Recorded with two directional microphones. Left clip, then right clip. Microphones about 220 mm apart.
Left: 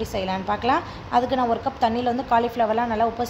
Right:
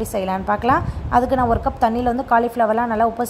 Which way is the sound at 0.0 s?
20° right (ahead or behind).